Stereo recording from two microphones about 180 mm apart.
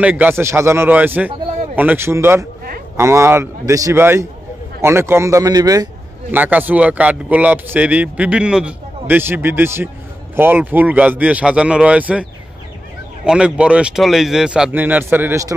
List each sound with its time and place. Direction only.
0.0 s a man's voice: 10° right (ahead or behind)
6.3 s a man's voice: 10° right (ahead or behind)